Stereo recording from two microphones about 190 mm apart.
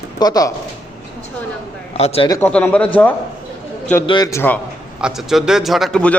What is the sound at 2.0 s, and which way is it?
Speech, 30° left (ahead or behind).